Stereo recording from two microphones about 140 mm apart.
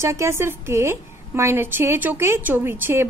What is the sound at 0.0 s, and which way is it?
A woman's voice, 20° right (ahead or behind).